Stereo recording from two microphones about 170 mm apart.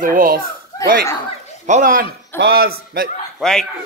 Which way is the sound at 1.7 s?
55° right (ahead or behind).